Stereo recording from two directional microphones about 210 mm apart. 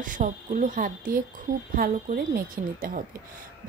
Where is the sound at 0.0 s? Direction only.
40° right (ahead or behind).